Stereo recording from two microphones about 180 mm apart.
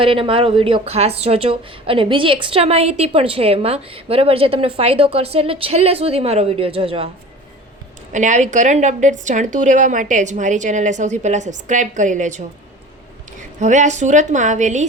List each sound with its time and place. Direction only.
0.0 s a woman's voice: 30° right (ahead or behind)
8.1 s a woman's voice: 45° right (ahead or behind)
13.6 s a woman's voice: 40° right (ahead or behind)